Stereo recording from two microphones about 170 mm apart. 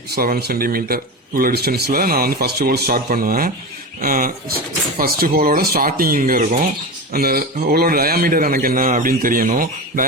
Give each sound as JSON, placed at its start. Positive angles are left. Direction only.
{"t": 0.2, "sound": "speech", "side_deg": -60}